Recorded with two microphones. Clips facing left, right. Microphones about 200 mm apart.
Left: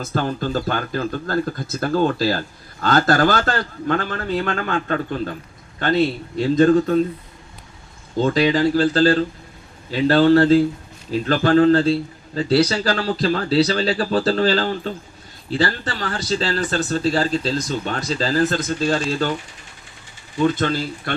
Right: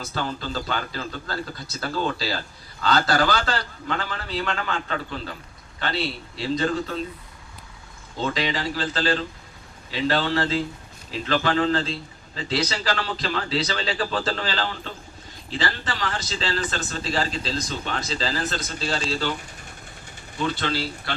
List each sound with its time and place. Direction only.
0.0 s speech: 50° left (ahead or behind)
8.2 s speech: 45° left (ahead or behind)
20.4 s speech: 45° left (ahead or behind)